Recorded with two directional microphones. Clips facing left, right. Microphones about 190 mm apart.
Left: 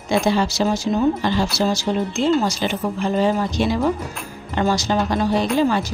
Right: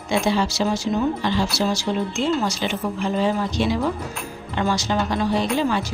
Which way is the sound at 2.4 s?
40° left (ahead or behind).